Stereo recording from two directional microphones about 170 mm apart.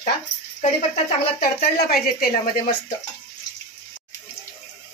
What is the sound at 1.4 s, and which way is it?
Speech, 65° left (ahead or behind).